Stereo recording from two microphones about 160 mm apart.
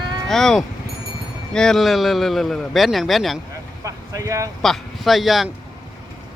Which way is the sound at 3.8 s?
20° right (ahead or behind).